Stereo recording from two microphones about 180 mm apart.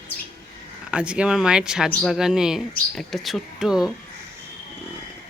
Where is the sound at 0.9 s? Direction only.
5° right (ahead or behind).